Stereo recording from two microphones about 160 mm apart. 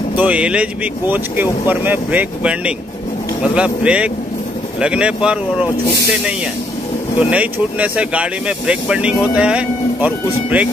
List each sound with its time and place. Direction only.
0.1 s speech: 10° right (ahead or behind)
7.2 s speech: 10° right (ahead or behind)